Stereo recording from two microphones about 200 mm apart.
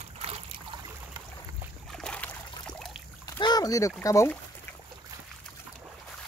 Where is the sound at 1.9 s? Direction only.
5° left (ahead or behind).